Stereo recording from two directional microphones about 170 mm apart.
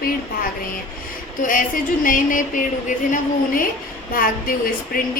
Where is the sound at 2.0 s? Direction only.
50° left (ahead or behind).